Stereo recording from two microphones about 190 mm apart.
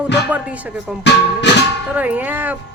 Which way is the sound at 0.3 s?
10° right (ahead or behind).